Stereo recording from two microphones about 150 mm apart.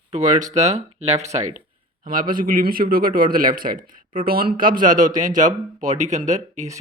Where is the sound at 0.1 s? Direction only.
55° right (ahead or behind).